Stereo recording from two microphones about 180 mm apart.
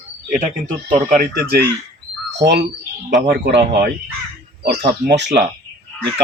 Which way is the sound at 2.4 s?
70° right (ahead or behind).